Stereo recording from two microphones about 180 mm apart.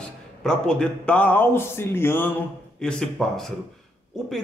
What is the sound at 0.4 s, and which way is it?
A man's voice, 5° left (ahead or behind).